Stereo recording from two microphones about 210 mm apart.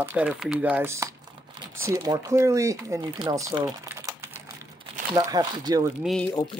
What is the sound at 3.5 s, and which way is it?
Typing, 15° right (ahead or behind).